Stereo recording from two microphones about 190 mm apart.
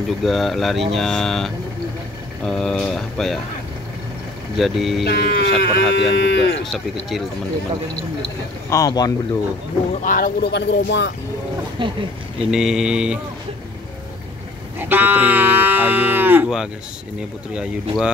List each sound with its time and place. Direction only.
0.2 s speech: centre (ahead or behind)
4.6 s speech: centre (ahead or behind)
5.0 s speech: 55° left (ahead or behind)
6.6 s speech: centre (ahead or behind)
8.2 s speech: 15° left (ahead or behind)
10.0 s speech: 50° left (ahead or behind); by 11.1 s 65° left (ahead or behind)
11.8 s speech: 25° right (ahead or behind)
12.4 s speech: 5° right (ahead or behind)
14.8 s speech: 10° right (ahead or behind)